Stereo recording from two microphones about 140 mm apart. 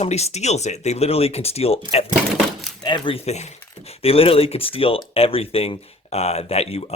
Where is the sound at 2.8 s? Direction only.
35° left (ahead or behind).